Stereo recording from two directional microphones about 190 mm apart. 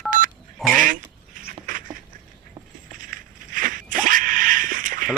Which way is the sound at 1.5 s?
45° right (ahead or behind).